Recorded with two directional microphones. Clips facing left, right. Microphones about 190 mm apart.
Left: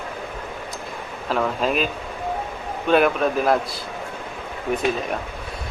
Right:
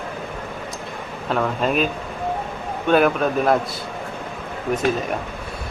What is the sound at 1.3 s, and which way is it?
Speech, centre (ahead or behind).